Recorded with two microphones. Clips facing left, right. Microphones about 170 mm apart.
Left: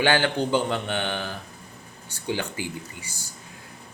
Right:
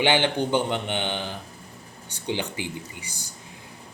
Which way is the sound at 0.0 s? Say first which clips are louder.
Even; 20° right (ahead or behind).